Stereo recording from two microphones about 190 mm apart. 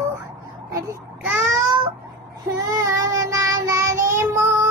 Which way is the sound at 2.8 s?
15° right (ahead or behind).